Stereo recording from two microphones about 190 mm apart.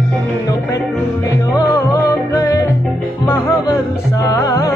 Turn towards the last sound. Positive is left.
turn(degrees=15)  # may be behind; listen again after turning